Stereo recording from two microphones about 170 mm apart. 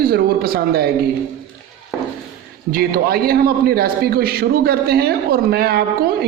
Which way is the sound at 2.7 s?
60° right (ahead or behind).